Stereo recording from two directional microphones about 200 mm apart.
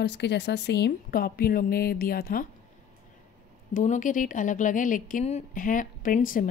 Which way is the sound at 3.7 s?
40° left (ahead or behind).